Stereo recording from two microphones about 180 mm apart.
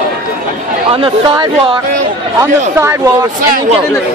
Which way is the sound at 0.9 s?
25° right (ahead or behind).